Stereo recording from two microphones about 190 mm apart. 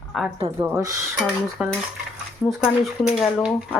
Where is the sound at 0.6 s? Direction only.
15° right (ahead or behind).